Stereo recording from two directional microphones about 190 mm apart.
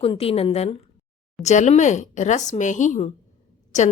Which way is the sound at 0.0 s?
30° left (ahead or behind).